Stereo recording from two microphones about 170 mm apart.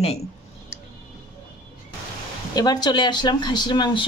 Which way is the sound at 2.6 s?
25° left (ahead or behind).